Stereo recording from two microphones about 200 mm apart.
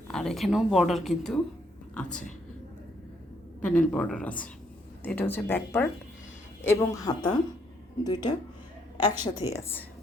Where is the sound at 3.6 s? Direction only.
5° left (ahead or behind); by 8.4 s 20° left (ahead or behind).